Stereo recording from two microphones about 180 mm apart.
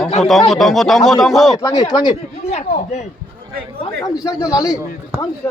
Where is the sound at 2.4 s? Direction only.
35° left (ahead or behind).